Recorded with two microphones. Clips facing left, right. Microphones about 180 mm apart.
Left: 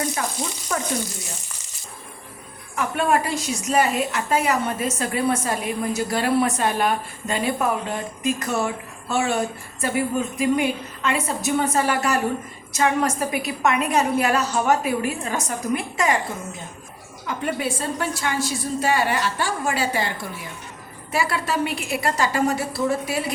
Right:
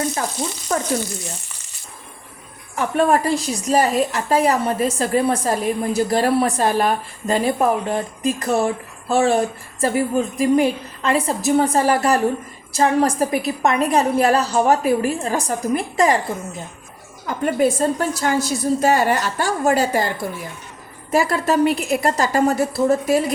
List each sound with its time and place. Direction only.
0.7 s frying: 25° right (ahead or behind)
2.7 s a woman's voice: 35° right (ahead or behind)
17.2 s a woman's voice: 45° right (ahead or behind)